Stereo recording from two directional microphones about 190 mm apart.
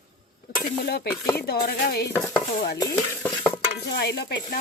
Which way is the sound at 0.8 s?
55° left (ahead or behind).